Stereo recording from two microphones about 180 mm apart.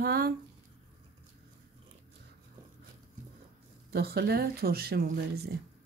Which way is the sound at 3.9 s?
65° right (ahead or behind).